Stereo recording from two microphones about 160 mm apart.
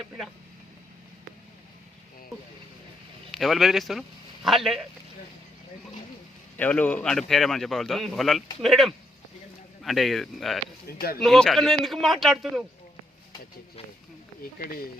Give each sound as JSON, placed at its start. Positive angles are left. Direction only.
{"t": 3.3, "sound": "speech", "side_deg": 0}
{"t": 6.6, "sound": "speech", "side_deg": 10}
{"t": 14.6, "sound": "speech", "side_deg": 65}